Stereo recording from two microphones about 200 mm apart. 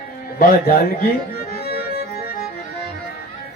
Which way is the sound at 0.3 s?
50° left (ahead or behind).